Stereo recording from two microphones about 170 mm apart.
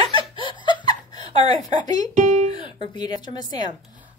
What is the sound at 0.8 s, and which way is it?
Laughter, 25° left (ahead or behind).